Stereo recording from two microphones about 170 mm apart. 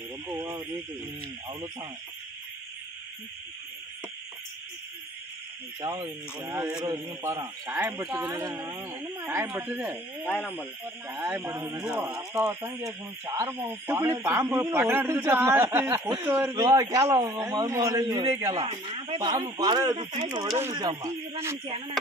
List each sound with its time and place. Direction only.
5.8 s a man's voice: 20° right (ahead or behind)
7.6 s a man's voice: 10° right (ahead or behind)
9.8 s speech: centre (ahead or behind)
10.4 s speech: 10° left (ahead or behind)
11.1 s a man's voice: 15° right (ahead or behind)
12.4 s a man's voice: 10° right (ahead or behind)
18.5 s a man's voice: 35° right (ahead or behind)
19.1 s a man's voice: 20° right (ahead or behind)
20.0 s a man's voice: 40° right (ahead or behind)
20.5 s a man's voice: 20° right (ahead or behind)